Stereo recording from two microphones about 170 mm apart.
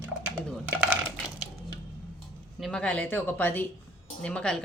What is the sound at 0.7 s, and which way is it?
Coin, 5° right (ahead or behind).